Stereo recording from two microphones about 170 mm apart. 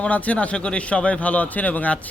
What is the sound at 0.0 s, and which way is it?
Speech, 5° left (ahead or behind).